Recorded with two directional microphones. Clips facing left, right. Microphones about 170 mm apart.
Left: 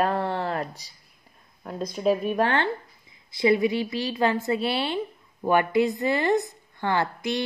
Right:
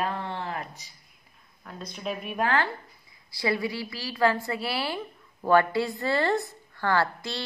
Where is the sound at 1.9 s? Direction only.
35° left (ahead or behind); by 7.4 s 20° left (ahead or behind).